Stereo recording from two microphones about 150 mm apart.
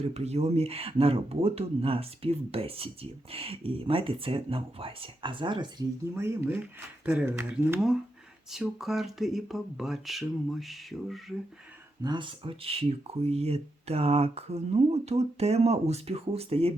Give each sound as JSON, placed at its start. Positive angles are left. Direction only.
{"t": 0.1, "sound": "speech", "side_deg": -45}
{"t": 6.1, "sound": "speech", "side_deg": -15}
{"t": 8.4, "sound": "speech", "side_deg": 0}
{"t": 12.0, "sound": "speech", "side_deg": -30}